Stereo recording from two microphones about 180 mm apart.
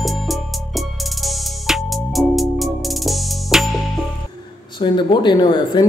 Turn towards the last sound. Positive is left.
turn(degrees=25)  # may be behind; listen again after turning